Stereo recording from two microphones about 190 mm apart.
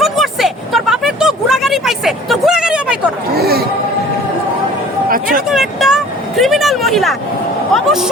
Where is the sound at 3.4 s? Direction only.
55° right (ahead or behind).